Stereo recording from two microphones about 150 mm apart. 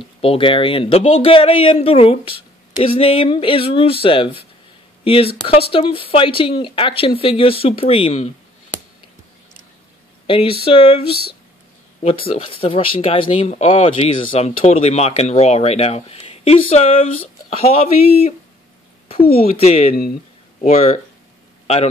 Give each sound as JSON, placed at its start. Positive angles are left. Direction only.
{"t": 0.2, "sound": "speech", "side_deg": 35}
{"t": 10.2, "sound": "speech", "side_deg": 35}
{"t": 19.6, "sound": "speech", "side_deg": 40}